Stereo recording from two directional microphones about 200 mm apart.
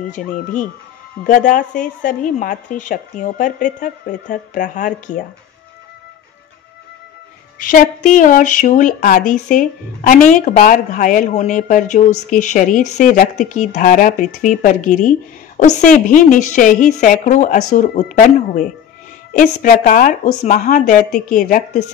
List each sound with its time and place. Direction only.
1.2 s speech: 40° left (ahead or behind)
7.5 s speech: 40° left (ahead or behind)